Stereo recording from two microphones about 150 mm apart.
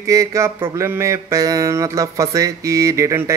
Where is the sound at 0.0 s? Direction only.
20° right (ahead or behind).